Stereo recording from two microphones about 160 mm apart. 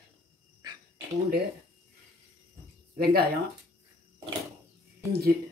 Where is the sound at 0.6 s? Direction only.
25° right (ahead or behind).